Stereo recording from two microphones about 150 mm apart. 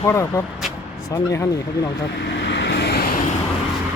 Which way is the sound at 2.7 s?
90° left.